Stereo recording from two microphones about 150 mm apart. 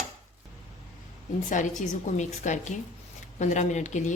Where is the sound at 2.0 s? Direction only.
50° left (ahead or behind).